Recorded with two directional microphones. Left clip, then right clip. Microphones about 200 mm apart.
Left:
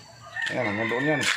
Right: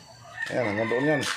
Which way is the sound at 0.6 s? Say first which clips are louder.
Right 2 dB; 20° right (ahead or behind).